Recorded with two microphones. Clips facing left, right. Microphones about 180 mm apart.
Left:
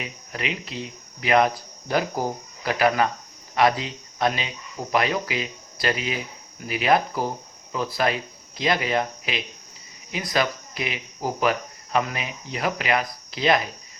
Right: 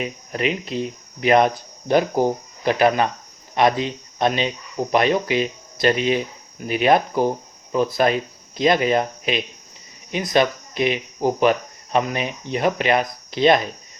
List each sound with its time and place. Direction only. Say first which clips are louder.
0.0 s speech: right 8 dB; 25° right (ahead or behind)